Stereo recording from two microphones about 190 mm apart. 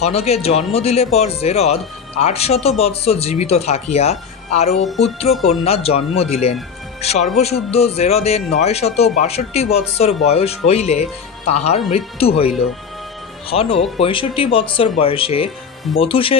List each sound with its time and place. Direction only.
0.0 s speech: 35° left (ahead or behind)
4.7 s music: centre (ahead or behind)
5.6 s speech: 30° left (ahead or behind)